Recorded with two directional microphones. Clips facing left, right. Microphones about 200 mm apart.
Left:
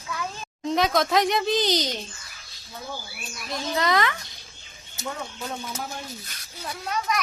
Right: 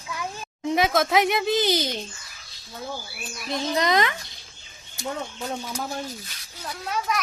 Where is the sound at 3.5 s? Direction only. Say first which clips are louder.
Right 2 dB; 20° right (ahead or behind).